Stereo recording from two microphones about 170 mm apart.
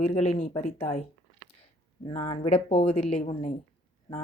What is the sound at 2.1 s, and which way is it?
A woman's voice, 35° left (ahead or behind).